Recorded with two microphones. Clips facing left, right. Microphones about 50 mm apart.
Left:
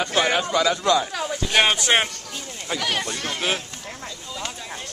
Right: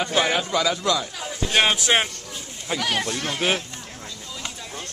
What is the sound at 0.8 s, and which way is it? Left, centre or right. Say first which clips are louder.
Speech: left 4 dB; left.